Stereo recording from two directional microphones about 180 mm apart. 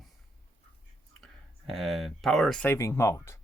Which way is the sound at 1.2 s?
Centre (ahead or behind).